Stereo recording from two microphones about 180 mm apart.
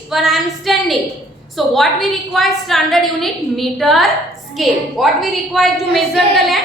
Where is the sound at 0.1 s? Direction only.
Centre (ahead or behind).